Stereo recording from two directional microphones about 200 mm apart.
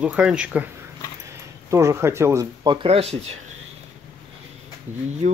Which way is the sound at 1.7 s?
15° right (ahead or behind).